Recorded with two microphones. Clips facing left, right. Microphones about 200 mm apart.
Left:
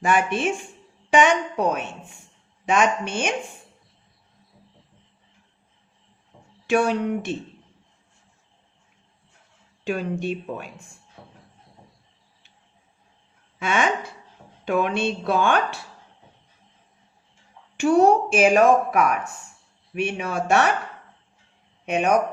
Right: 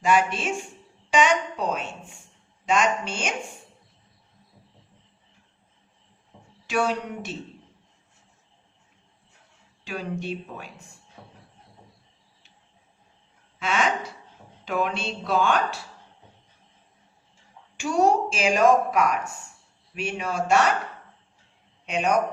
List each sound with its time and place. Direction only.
0.0 s speech: 55° left (ahead or behind)
6.3 s a sound: centre (ahead or behind)
6.7 s speech: 55° left (ahead or behind)
9.8 s speech: 50° left (ahead or behind)
14.6 s speech: 55° left (ahead or behind)
17.7 s speech: 60° left (ahead or behind)
21.8 s speech: 55° left (ahead or behind)